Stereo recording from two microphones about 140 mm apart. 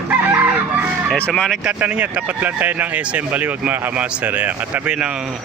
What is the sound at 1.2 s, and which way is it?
Speech, 10° left (ahead or behind).